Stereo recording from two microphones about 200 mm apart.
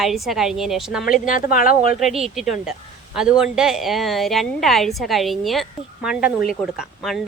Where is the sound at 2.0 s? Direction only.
Centre (ahead or behind).